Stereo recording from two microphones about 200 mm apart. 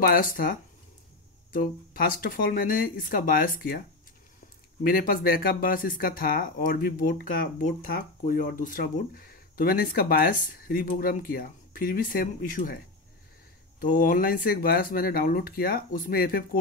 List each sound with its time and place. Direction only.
0.0 s speech: 45° left (ahead or behind)
4.8 s speech: 45° left (ahead or behind)